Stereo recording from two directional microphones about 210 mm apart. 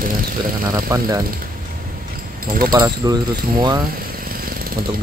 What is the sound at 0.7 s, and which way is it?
Speech, 15° right (ahead or behind).